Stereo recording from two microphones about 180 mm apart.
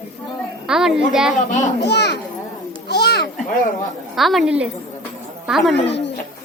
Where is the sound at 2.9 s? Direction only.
65° left (ahead or behind).